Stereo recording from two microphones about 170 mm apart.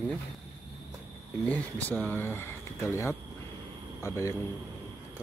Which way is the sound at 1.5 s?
10° left (ahead or behind).